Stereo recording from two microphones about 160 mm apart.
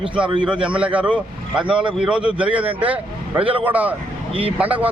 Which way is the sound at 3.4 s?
35° right (ahead or behind).